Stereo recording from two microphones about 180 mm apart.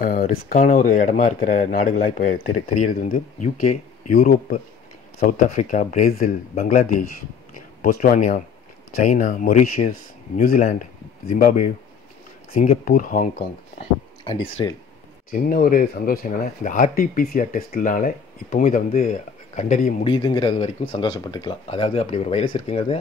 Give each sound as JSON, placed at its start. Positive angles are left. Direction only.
{"t": 0.0, "sound": "speech", "side_deg": 50}
{"t": 14.6, "sound": "speech", "side_deg": 25}
{"t": 15.3, "sound": "speech", "side_deg": 55}
{"t": 20.1, "sound": "speech", "side_deg": 25}